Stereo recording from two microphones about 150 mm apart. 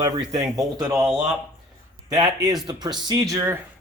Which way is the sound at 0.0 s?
25° right (ahead or behind).